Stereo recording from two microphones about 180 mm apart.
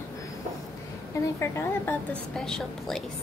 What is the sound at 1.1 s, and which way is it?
A woman's voice, 15° left (ahead or behind).